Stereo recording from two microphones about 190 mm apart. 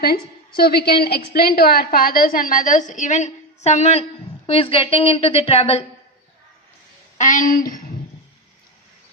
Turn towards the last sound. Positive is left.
turn(degrees=45)  # may be behind; listen again after turning